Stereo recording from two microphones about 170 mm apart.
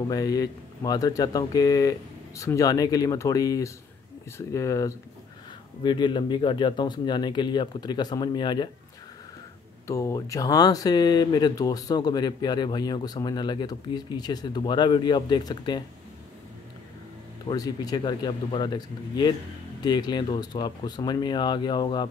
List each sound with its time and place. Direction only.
0.1 s speech: 20° left (ahead or behind)
9.8 s speech: 20° left (ahead or behind)
17.5 s speech: 20° left (ahead or behind)